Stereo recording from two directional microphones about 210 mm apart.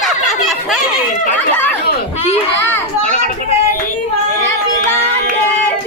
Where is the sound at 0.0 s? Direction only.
Centre (ahead or behind).